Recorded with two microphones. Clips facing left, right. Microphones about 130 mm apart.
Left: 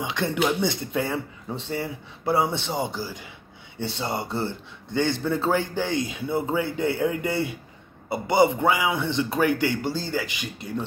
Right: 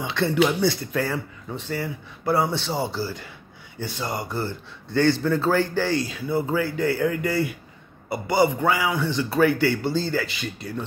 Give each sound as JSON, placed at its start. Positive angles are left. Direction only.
{"t": 0.0, "sound": "a man's voice", "side_deg": 15}
{"t": 3.8, "sound": "a man's voice", "side_deg": 25}